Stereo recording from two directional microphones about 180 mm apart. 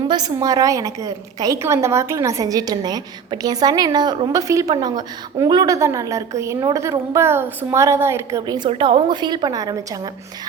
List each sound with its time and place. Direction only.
0.1 s a woman's voice: 20° right (ahead or behind)